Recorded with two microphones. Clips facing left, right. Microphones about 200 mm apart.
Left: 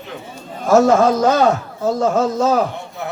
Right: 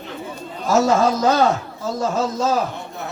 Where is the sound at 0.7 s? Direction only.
55° left (ahead or behind).